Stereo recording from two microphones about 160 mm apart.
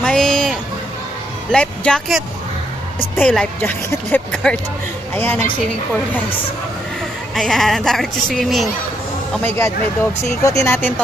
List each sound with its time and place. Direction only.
0.0 s a sound: 5° left (ahead or behind)
1.5 s speech: 5° left (ahead or behind)
7.3 s speech: centre (ahead or behind)
9.3 s speech: 10° left (ahead or behind)